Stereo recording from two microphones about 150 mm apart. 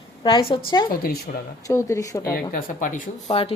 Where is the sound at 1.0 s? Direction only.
85° left.